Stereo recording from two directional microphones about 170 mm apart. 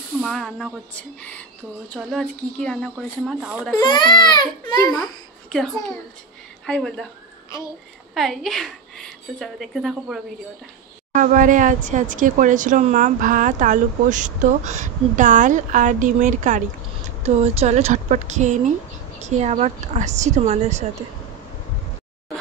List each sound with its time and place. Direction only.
0.2 s a woman's voice: 5° left (ahead or behind)
3.8 s speech: 25° left (ahead or behind)
5.5 s a woman's voice: centre (ahead or behind)
8.1 s a woman's voice: centre (ahead or behind)
11.1 s speech: 50° right (ahead or behind)